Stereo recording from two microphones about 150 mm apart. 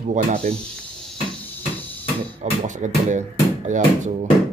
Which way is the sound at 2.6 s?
55° right (ahead or behind).